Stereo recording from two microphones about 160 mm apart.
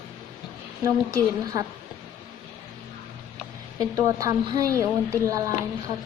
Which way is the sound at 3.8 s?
20° right (ahead or behind).